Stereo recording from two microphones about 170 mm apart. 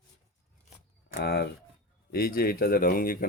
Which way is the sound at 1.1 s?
70° left (ahead or behind).